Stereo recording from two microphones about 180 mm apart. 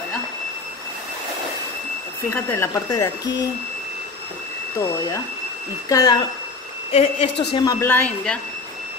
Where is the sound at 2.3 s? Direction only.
15° left (ahead or behind).